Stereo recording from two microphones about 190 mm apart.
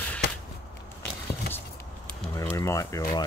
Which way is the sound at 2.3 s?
15° left (ahead or behind).